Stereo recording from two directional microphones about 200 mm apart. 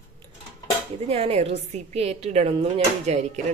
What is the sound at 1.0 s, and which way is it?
A woman's voice, 30° right (ahead or behind).